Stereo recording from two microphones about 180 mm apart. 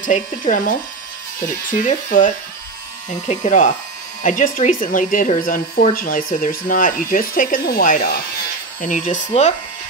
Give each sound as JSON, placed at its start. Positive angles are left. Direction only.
{"t": 0.0, "sound": "speech", "side_deg": 45}